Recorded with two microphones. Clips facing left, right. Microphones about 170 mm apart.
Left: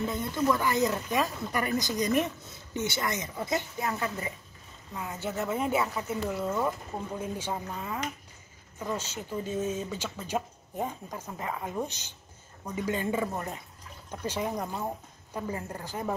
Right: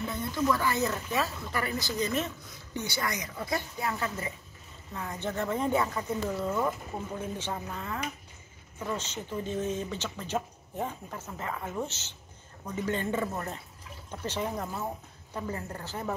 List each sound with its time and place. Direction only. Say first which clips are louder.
0.0 s speech: left 2 dB; 20° left (ahead or behind)
4.9 s speech: even; 10° left (ahead or behind)